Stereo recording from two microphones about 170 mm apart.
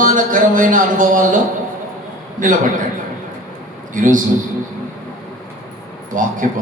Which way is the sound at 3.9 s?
50° right (ahead or behind).